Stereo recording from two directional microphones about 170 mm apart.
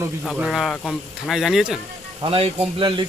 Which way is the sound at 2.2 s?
30° right (ahead or behind).